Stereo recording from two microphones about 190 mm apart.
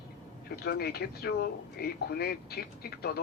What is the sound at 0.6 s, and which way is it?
Speech, 55° left (ahead or behind).